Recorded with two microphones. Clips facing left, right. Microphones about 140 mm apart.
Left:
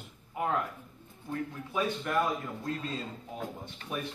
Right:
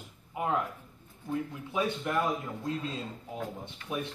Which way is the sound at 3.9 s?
20° right (ahead or behind).